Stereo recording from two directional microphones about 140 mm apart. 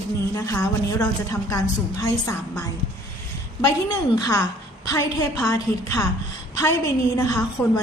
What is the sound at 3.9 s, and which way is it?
A woman's voice, 25° left (ahead or behind).